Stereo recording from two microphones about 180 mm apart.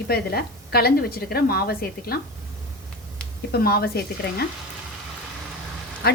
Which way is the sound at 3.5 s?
60° left (ahead or behind).